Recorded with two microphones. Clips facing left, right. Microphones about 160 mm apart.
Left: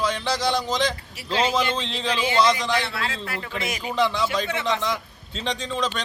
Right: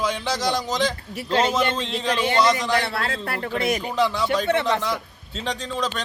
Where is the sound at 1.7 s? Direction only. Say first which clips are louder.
Right 2 dB; 5° right (ahead or behind).